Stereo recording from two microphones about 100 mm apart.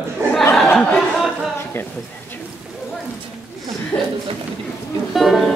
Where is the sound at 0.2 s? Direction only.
30° right (ahead or behind).